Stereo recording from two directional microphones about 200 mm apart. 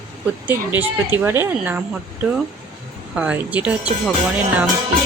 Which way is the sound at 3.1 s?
5° right (ahead or behind).